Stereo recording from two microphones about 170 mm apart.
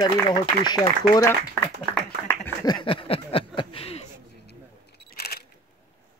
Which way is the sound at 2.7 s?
30° left (ahead or behind).